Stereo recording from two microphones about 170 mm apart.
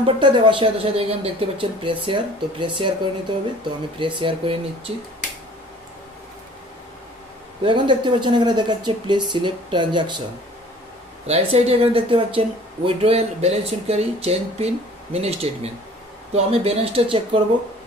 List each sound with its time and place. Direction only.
0.0 s a woman's voice: 30° right (ahead or behind)
7.6 s speech: 30° right (ahead or behind)
11.2 s a woman's voice: 40° right (ahead or behind)